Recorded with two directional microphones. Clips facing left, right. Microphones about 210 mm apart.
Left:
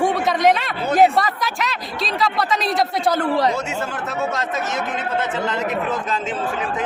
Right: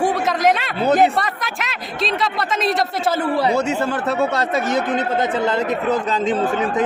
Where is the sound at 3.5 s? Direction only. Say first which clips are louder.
Right 6 dB; 35° right (ahead or behind).